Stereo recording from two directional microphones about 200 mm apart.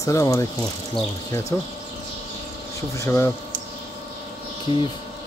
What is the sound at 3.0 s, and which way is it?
Speech, 15° left (ahead or behind).